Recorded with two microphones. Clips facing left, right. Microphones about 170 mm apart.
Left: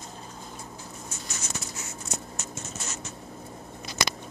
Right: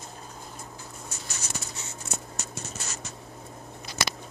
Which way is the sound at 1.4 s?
30° right (ahead or behind).